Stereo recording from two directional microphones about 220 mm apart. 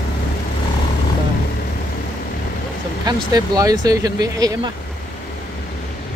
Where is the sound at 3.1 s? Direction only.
15° right (ahead or behind).